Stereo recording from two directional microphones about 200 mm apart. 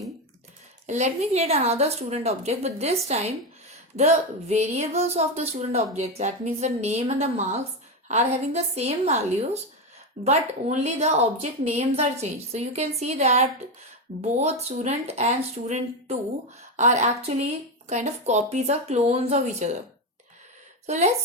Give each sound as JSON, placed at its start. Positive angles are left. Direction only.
{"t": 0.9, "sound": "speech", "side_deg": -35}
{"t": 20.8, "sound": "speech", "side_deg": -35}